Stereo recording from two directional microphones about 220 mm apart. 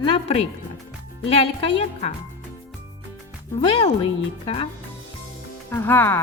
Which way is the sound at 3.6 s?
20° left (ahead or behind).